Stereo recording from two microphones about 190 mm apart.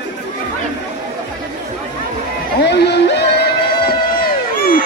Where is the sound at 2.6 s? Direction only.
60° left (ahead or behind).